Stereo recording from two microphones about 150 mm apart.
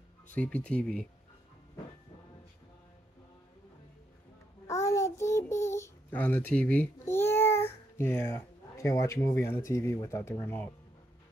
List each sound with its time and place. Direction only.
0.3 s speech: 10° left (ahead or behind)
4.6 s child singing: 20° left (ahead or behind)
8.3 s speech: 20° left (ahead or behind)